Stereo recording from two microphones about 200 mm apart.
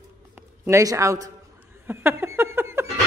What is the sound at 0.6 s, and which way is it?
A woman's voice, 15° right (ahead or behind).